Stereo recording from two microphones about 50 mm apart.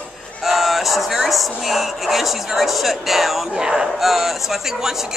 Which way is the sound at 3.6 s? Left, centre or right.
Centre.